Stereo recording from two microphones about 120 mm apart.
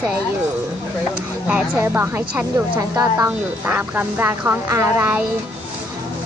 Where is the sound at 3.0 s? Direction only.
25° right (ahead or behind).